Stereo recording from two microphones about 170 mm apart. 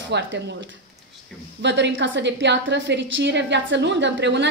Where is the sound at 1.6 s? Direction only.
90° right.